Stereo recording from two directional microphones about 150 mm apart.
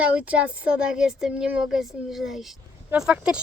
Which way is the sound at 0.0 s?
10° right (ahead or behind).